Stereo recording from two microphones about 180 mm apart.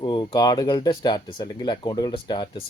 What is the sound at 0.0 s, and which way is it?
Speech, 25° left (ahead or behind).